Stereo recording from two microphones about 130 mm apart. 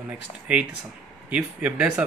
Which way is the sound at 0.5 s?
10° right (ahead or behind).